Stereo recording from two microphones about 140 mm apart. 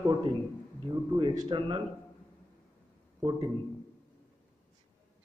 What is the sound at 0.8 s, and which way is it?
Speech, 35° right (ahead or behind).